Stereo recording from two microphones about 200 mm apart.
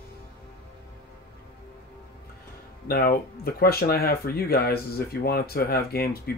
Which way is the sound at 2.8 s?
45° left (ahead or behind).